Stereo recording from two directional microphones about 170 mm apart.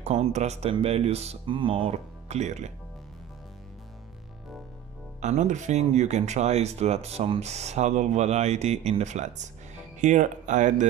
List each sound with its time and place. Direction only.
0.0 s speech: 40° right (ahead or behind)
5.2 s speech: 45° right (ahead or behind)